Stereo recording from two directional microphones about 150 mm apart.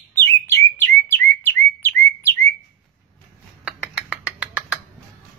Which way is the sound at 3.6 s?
10° right (ahead or behind).